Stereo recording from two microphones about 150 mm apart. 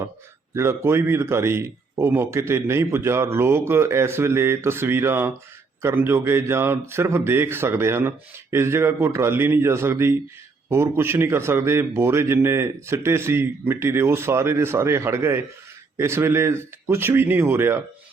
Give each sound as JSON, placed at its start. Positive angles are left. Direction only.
{"t": 0.5, "sound": "speech", "side_deg": -15}